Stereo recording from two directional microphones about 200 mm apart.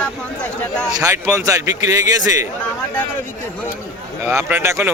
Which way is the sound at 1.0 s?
15° right (ahead or behind).